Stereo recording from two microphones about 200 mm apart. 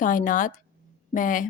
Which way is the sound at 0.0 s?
40° left (ahead or behind).